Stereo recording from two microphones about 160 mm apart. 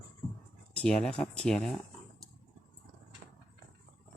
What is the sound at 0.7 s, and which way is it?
Speech, 5° left (ahead or behind).